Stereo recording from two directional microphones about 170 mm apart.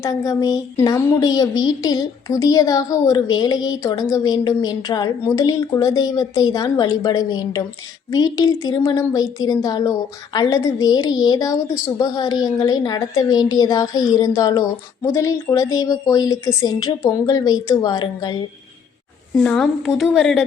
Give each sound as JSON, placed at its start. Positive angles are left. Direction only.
{"t": 0.0, "sound": "a woman's voice", "side_deg": 20}
{"t": 19.3, "sound": "speech", "side_deg": 5}